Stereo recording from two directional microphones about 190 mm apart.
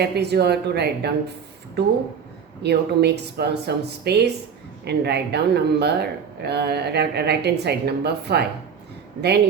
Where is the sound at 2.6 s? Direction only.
60° right (ahead or behind).